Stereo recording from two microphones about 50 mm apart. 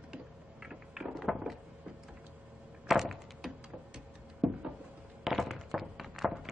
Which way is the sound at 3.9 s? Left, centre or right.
Centre.